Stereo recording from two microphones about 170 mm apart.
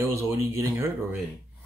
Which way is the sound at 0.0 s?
15° right (ahead or behind).